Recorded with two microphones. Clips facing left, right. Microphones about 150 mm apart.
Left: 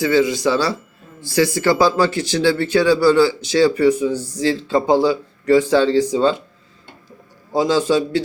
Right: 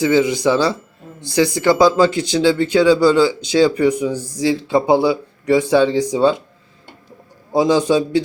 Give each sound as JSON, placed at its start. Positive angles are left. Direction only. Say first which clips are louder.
{"t": 0.0, "sound": "speech", "louder": "right 1 dB", "side_deg": -20}
{"t": 7.5, "sound": "speech", "louder": "right 2 dB", "side_deg": -15}